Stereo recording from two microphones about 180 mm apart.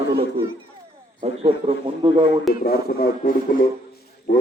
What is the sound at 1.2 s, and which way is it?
A man's voice, 35° right (ahead or behind).